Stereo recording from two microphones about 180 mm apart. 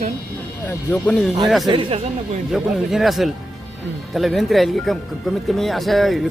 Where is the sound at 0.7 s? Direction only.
10° left (ahead or behind).